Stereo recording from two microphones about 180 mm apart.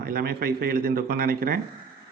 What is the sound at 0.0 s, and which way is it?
Speech, 55° right (ahead or behind).